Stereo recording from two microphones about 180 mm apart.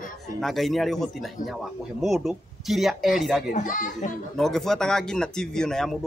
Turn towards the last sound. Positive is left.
turn(degrees=5)  # may be behind; listen again after turning